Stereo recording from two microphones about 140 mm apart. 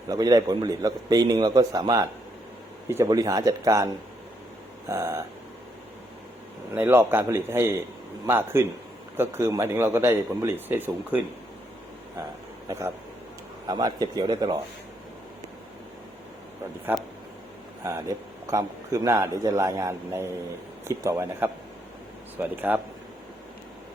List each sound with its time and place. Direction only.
0.1 s a man's voice: 25° right (ahead or behind)
6.7 s speech: 15° right (ahead or behind)
13.7 s a man's voice: 30° right (ahead or behind)
16.9 s a man's voice: 15° right (ahead or behind)